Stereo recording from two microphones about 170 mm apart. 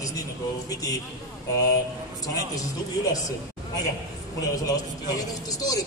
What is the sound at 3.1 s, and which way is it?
A man's voice, 20° left (ahead or behind).